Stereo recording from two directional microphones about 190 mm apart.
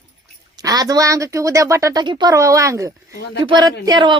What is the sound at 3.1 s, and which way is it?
Speech, 55° left (ahead or behind).